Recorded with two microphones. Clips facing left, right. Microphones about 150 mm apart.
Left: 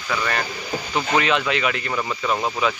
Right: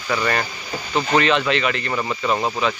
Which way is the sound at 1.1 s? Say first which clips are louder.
Right 3 dB; 5° left (ahead or behind).